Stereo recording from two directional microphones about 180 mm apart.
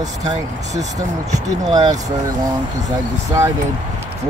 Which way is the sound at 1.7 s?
20° right (ahead or behind).